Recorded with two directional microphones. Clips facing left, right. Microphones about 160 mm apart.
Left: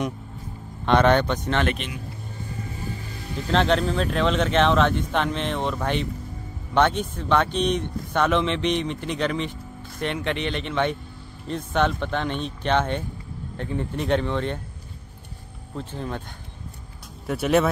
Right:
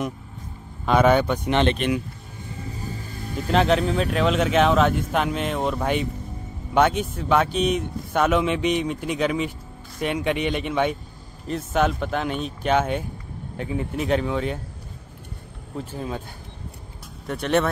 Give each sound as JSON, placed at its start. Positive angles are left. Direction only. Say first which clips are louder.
{"t": 0.8, "sound": "speech", "louder": "right 1 dB", "side_deg": -5}
{"t": 1.8, "sound": "speech", "louder": "right 12 dB", "side_deg": -55}
{"t": 3.5, "sound": "speech", "louder": "right 1 dB", "side_deg": -5}
{"t": 15.8, "sound": "speech", "louder": "right 1 dB", "side_deg": -10}
{"t": 17.3, "sound": "speech", "louder": "left 1 dB", "side_deg": 5}